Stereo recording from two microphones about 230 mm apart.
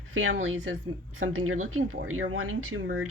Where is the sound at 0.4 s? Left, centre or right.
Right.